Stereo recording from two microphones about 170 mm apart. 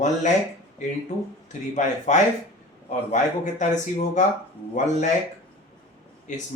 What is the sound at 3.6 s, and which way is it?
Speech, 45° left (ahead or behind).